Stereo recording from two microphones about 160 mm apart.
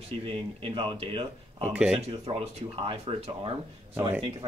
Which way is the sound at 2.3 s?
35° right (ahead or behind).